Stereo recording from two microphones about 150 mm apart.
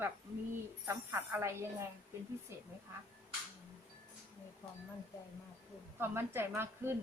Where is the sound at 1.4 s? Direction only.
15° right (ahead or behind).